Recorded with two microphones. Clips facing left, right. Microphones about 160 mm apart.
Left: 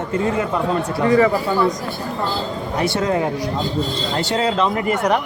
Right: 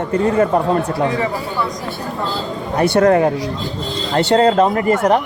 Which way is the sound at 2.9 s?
60° right (ahead or behind).